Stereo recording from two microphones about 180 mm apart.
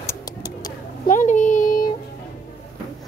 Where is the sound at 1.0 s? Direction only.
45° left (ahead or behind).